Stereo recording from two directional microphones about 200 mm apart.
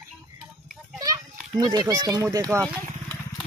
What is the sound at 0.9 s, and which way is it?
Children playing, 15° right (ahead or behind).